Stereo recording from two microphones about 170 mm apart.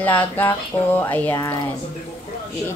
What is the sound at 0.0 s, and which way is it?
A woman's voice, 10° left (ahead or behind).